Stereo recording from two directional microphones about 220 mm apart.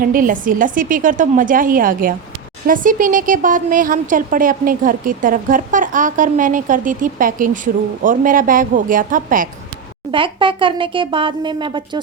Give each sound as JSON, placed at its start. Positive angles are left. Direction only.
{"t": 0.0, "sound": "a woman's voice", "side_deg": -40}
{"t": 10.1, "sound": "speech", "side_deg": -20}